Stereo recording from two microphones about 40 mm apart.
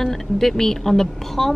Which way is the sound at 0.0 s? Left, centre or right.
Centre.